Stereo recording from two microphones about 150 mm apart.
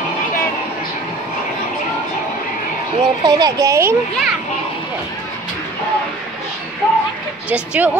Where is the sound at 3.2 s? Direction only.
25° right (ahead or behind).